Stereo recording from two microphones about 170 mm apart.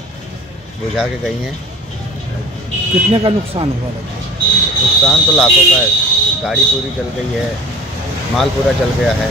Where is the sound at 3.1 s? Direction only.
30° right (ahead or behind).